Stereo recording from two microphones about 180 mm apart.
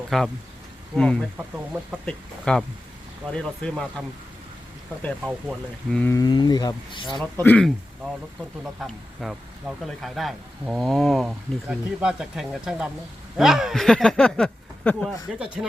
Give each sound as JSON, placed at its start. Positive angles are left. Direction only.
{"t": 0.1, "sound": "speech", "side_deg": 0}
{"t": 1.4, "sound": "speech", "side_deg": -10}
{"t": 2.0, "sound": "speech", "side_deg": 5}
{"t": 5.9, "sound": "speech", "side_deg": 5}
{"t": 6.1, "sound": "speech", "side_deg": 25}
{"t": 7.2, "sound": "speech", "side_deg": 10}